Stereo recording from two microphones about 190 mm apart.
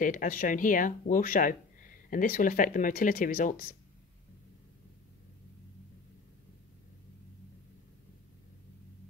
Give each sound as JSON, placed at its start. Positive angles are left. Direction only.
{"t": 0.0, "sound": "speech", "side_deg": 45}